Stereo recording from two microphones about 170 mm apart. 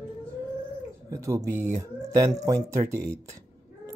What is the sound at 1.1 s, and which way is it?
Speech, 15° right (ahead or behind).